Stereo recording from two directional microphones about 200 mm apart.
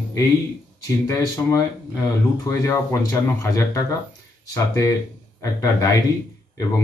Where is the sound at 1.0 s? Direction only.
15° left (ahead or behind).